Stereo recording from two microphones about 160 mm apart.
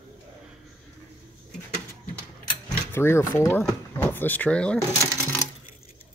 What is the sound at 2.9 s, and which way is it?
Speech, 15° left (ahead or behind).